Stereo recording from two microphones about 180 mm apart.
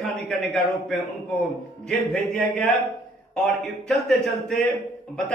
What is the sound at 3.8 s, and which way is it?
Speech, centre (ahead or behind).